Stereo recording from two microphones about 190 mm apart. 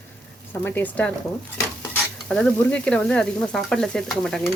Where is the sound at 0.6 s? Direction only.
10° left (ahead or behind).